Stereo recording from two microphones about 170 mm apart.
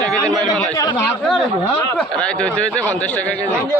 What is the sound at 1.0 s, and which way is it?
A man's voice, 5° left (ahead or behind).